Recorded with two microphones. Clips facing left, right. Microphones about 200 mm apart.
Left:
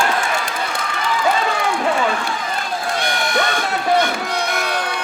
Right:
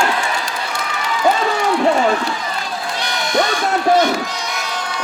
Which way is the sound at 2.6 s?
50° left (ahead or behind).